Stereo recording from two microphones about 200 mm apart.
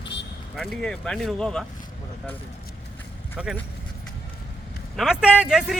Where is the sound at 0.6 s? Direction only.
5° left (ahead or behind).